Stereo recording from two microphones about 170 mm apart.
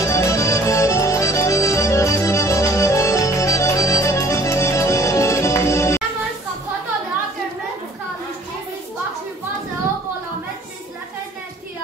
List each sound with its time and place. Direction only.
0.0 s music: 15° left (ahead or behind)